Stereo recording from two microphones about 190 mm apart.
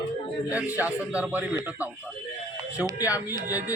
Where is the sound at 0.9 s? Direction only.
5° right (ahead or behind).